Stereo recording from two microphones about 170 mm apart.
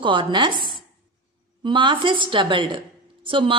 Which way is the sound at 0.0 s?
30° right (ahead or behind).